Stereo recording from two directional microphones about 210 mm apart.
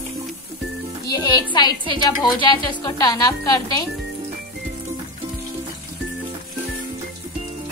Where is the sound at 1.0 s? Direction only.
20° left (ahead or behind).